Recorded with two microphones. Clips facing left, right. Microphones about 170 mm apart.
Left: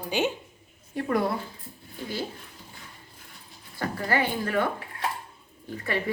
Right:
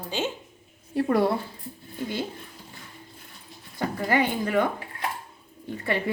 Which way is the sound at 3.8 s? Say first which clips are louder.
Right 3 dB; 15° right (ahead or behind).